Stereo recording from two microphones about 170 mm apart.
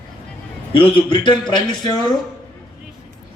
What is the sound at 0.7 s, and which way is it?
A man's voice, 30° left (ahead or behind).